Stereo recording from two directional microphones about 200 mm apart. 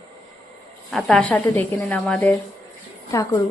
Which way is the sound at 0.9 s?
5° left (ahead or behind).